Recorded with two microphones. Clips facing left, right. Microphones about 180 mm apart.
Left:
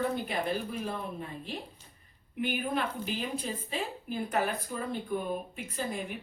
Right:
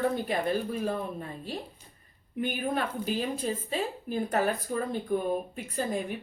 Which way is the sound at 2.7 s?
40° right (ahead or behind).